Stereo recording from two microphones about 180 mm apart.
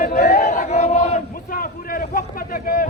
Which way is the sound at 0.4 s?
40° left (ahead or behind).